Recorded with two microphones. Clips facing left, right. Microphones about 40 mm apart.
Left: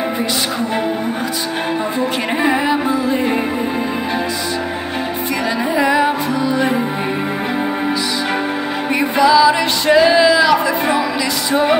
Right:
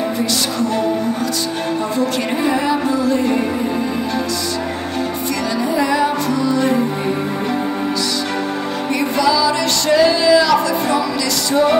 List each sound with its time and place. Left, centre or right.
2.0 s music: left
5.8 s music: left
9.1 s music: centre